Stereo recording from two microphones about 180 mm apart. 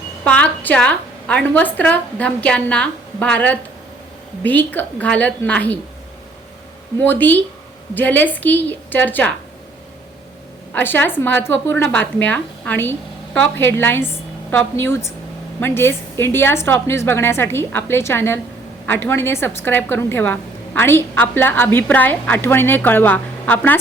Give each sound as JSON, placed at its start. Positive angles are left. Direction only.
{"t": 0.3, "sound": "a woman's voice", "side_deg": 5}
{"t": 7.0, "sound": "a woman's voice", "side_deg": 10}
{"t": 10.7, "sound": "a woman's voice", "side_deg": 10}